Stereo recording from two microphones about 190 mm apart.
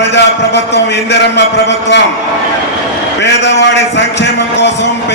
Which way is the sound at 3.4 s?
70° left (ahead or behind).